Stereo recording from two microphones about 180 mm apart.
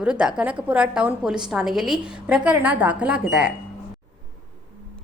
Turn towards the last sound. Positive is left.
turn(degrees=-5)  # may be behind; listen again after turning